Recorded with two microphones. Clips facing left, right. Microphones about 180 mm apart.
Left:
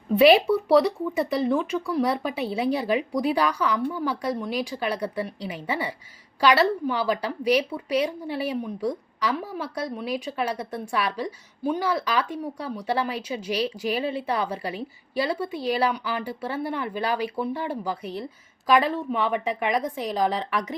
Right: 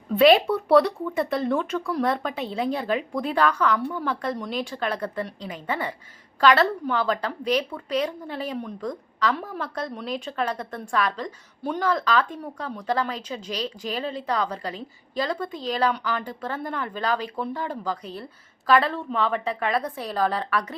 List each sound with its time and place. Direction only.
0.1 s a woman's voice: 5° left (ahead or behind)